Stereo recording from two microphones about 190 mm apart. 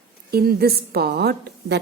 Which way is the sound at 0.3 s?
55° right (ahead or behind).